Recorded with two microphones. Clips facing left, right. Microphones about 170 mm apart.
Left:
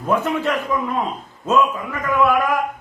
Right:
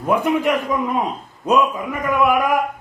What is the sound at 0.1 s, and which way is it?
A man's voice, 15° right (ahead or behind).